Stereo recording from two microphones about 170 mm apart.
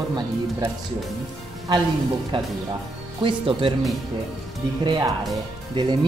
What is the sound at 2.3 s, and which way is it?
Speech, 30° right (ahead or behind).